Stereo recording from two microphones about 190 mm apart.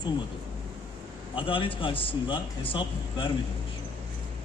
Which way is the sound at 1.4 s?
25° left (ahead or behind).